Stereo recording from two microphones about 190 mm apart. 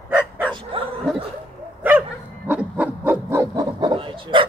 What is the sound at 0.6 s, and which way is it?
Bow-wow, 25° right (ahead or behind).